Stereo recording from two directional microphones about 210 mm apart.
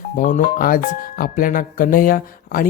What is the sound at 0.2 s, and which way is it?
Speech, 35° left (ahead or behind).